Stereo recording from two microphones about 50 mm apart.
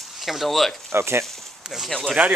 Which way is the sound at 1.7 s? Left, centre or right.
Centre.